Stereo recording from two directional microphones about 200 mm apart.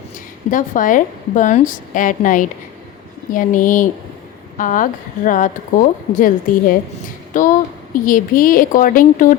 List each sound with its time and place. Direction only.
0.5 s speech: 40° left (ahead or behind)